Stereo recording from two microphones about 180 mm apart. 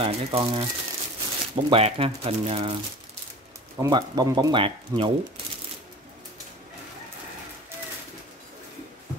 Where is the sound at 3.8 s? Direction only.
20° right (ahead or behind).